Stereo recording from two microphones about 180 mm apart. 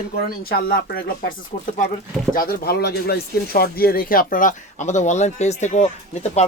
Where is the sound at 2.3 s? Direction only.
55° left (ahead or behind).